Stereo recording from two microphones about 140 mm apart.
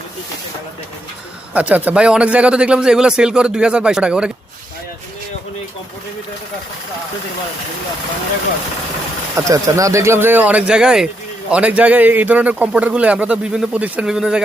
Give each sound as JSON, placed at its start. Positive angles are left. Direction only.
{"t": 1.5, "sound": "speech", "side_deg": -10}
{"t": 9.3, "sound": "speech", "side_deg": -25}